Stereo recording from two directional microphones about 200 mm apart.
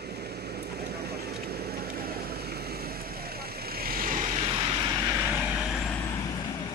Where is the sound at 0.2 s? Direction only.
55° right (ahead or behind).